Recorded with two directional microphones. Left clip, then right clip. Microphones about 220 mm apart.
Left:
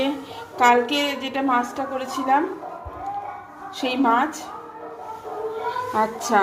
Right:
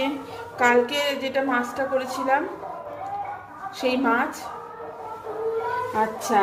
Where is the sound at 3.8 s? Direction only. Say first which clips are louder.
Left 2 dB; 20° left (ahead or behind).